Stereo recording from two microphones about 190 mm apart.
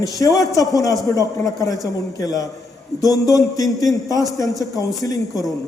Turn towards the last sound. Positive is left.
turn(degrees=20)  # may be behind; listen again after turning